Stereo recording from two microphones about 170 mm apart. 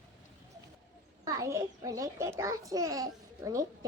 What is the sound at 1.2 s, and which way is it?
A child's voice, 20° right (ahead or behind).